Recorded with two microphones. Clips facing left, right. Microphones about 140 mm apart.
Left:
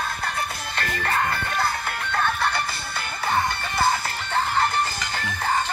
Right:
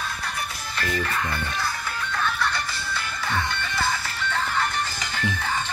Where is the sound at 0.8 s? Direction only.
55° left (ahead or behind).